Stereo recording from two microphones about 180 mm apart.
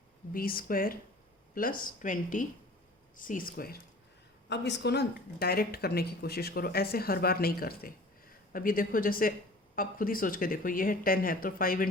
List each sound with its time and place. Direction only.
0.3 s speech: 55° left (ahead or behind)
4.4 s speech: 75° left (ahead or behind); by 11.9 s 55° left (ahead or behind)